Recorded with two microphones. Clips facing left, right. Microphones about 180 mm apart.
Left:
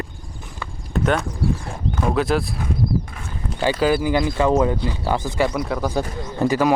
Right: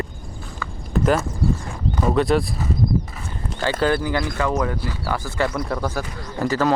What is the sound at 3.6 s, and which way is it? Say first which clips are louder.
Speech: left 2 dB; 10° left (ahead or behind).